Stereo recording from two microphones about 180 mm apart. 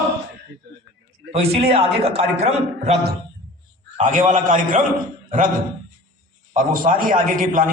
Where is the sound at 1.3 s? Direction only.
35° right (ahead or behind).